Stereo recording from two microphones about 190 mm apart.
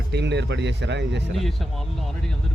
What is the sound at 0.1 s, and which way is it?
Speech, 65° right (ahead or behind).